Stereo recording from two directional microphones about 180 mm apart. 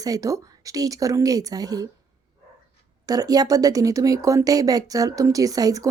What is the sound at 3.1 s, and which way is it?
Speech, 20° right (ahead or behind).